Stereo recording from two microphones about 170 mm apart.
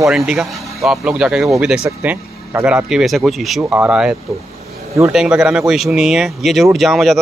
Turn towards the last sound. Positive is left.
turn(degrees=0)  # may be behind; listen again after turning